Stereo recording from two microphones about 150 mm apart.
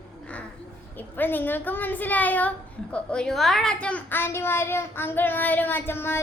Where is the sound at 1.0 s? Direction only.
10° left (ahead or behind).